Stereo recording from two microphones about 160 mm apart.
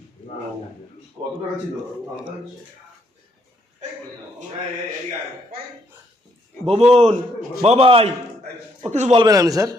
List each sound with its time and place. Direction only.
1.2 s speech: 10° right (ahead or behind)
6.7 s a man's voice: 40° right (ahead or behind)
9.2 s a man's voice: 20° right (ahead or behind)